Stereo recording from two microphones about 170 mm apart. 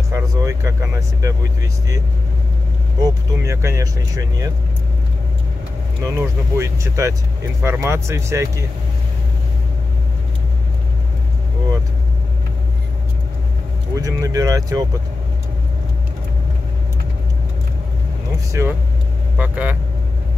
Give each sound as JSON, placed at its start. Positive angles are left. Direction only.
{"t": 0.1, "sound": "speech", "side_deg": -20}
{"t": 3.0, "sound": "speech", "side_deg": -20}
{"t": 6.0, "sound": "speech", "side_deg": -15}
{"t": 13.9, "sound": "speech", "side_deg": -20}
{"t": 18.6, "sound": "speech", "side_deg": -15}